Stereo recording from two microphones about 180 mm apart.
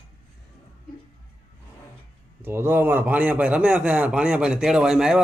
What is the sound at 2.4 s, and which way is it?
A man's voice, 10° right (ahead or behind).